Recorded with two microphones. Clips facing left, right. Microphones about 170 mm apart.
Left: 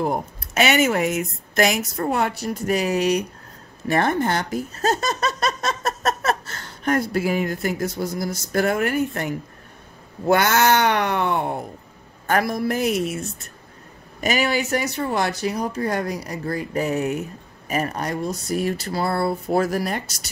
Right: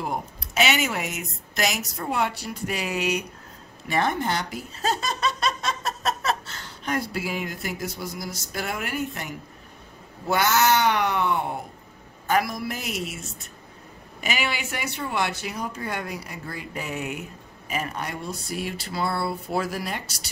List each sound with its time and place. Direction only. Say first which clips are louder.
0.0 s speech: left 6 dB; 50° left (ahead or behind)
3.9 s speech: left 4 dB; 50° left (ahead or behind)
10.2 s cat: left 4 dB; 55° left (ahead or behind)
12.3 s speech: left 4 dB; 50° left (ahead or behind)
14.2 s speech: left 7 dB; 40° left (ahead or behind)